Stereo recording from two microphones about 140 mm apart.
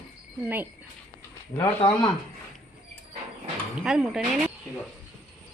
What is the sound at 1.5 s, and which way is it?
Speech, 35° left (ahead or behind).